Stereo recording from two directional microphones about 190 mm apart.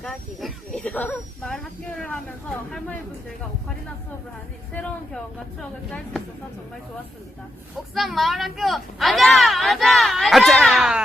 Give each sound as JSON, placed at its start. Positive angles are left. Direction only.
{"t": 0.0, "sound": "speech", "side_deg": 0}
{"t": 4.7, "sound": "speech", "side_deg": 5}
{"t": 7.9, "sound": "speech", "side_deg": 0}